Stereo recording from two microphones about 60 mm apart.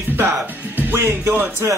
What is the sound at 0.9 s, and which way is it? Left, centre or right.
Speech, right.